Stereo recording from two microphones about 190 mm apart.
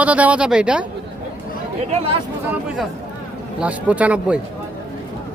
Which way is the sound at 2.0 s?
30° right (ahead or behind).